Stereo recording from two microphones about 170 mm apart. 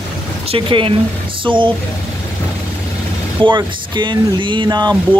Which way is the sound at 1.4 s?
30° right (ahead or behind).